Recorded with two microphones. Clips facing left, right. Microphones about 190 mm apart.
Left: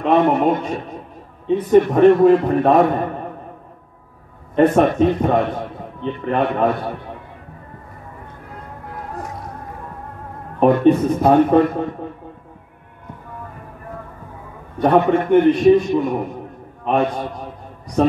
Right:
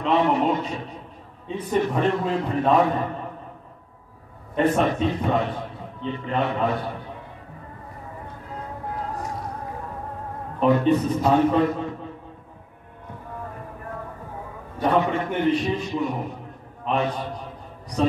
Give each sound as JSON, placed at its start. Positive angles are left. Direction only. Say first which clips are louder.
{"t": 0.0, "sound": "a man's voice", "louder": "left 5 dB", "side_deg": 55}
{"t": 4.6, "sound": "a man's voice", "louder": "left 7 dB", "side_deg": 50}
{"t": 10.6, "sound": "a man's voice", "louder": "left 6 dB", "side_deg": 55}
{"t": 14.8, "sound": "a man's voice", "louder": "left 7 dB", "side_deg": 60}